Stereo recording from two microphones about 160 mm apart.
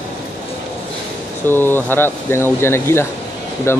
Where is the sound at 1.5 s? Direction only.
15° left (ahead or behind).